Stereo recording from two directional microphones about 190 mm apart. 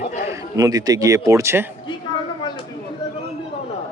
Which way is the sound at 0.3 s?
20° right (ahead or behind).